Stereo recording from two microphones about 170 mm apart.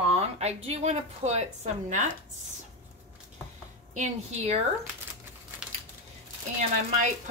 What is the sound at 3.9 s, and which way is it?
Speech, 45° right (ahead or behind).